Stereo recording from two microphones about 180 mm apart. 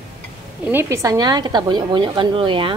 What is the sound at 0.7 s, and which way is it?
A woman's voice, 15° right (ahead or behind).